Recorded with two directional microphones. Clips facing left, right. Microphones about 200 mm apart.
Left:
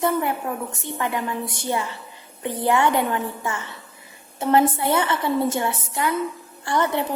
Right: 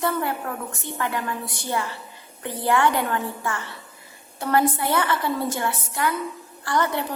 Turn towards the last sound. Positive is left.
turn(degrees=20)  # may be behind; listen again after turning